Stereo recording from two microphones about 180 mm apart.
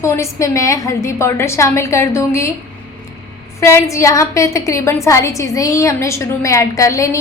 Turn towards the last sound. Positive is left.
turn(degrees=20)  # may be behind; listen again after turning